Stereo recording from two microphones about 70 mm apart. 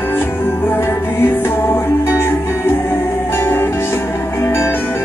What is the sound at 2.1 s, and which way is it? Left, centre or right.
Music, left.